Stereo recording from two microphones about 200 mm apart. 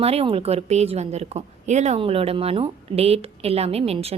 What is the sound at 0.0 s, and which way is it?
A woman's voice, 30° right (ahead or behind).